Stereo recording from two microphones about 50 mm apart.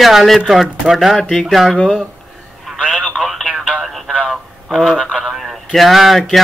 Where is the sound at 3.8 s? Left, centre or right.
Centre.